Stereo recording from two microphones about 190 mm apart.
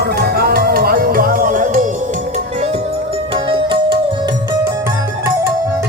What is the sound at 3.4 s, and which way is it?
Music, 25° right (ahead or behind).